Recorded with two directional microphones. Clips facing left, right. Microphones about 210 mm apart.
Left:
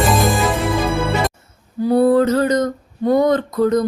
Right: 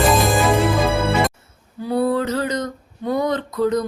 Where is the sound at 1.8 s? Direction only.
45° left (ahead or behind).